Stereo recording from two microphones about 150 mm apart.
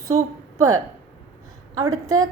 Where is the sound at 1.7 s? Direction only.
25° right (ahead or behind).